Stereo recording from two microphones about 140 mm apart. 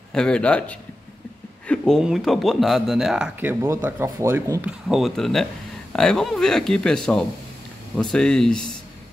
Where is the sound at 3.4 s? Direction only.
15° right (ahead or behind).